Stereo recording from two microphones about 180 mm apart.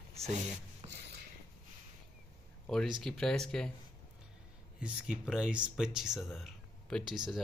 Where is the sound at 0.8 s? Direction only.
35° right (ahead or behind).